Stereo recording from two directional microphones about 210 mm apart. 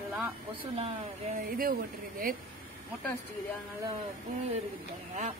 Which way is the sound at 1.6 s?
45° right (ahead or behind).